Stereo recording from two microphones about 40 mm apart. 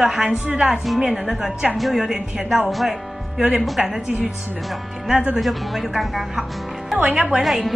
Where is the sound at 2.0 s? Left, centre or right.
Centre.